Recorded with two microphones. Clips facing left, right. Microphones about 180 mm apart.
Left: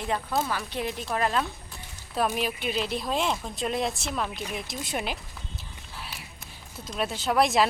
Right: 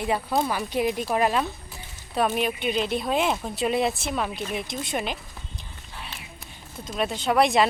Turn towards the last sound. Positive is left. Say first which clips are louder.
# right 2 dB
turn(degrees=0)  # may be behind; listen again after turning